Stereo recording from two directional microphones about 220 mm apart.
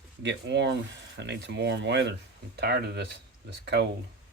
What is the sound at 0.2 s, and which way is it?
Speech, 55° right (ahead or behind).